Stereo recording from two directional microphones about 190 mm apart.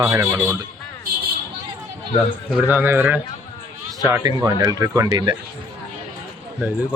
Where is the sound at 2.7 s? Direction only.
10° right (ahead or behind).